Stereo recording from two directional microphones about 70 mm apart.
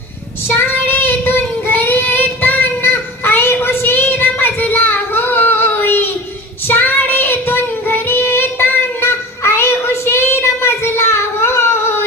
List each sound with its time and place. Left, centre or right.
0.4 s child singing: left